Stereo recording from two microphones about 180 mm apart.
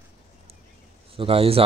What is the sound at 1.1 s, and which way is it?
Speech, 30° right (ahead or behind).